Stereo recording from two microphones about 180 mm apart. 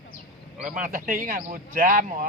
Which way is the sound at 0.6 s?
45° right (ahead or behind).